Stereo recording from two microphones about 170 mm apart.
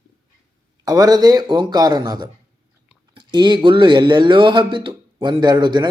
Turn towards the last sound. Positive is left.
turn(degrees=-25)  # may be behind; listen again after turning